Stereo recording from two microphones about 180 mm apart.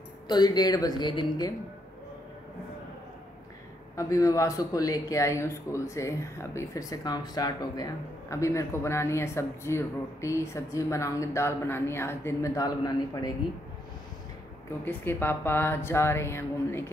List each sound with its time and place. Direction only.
0.3 s speech: 20° left (ahead or behind)
3.9 s speech: 15° left (ahead or behind)
14.9 s speech: 10° left (ahead or behind)